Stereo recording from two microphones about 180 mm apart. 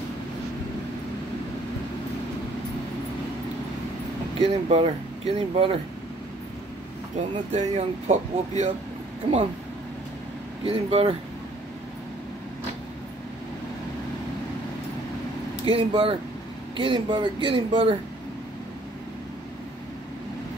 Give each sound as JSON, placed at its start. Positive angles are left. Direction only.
{"t": 4.5, "sound": "speech", "side_deg": -35}
{"t": 7.5, "sound": "speech", "side_deg": -40}
{"t": 9.2, "sound": "speech", "side_deg": -30}
{"t": 10.6, "sound": "speech", "side_deg": -30}
{"t": 15.6, "sound": "speech", "side_deg": -30}